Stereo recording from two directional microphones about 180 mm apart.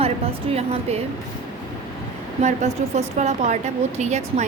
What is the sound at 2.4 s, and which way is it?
A woman's voice, 40° right (ahead or behind).